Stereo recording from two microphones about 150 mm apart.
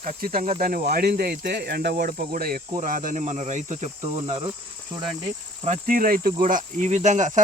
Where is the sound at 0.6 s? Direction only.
90° right.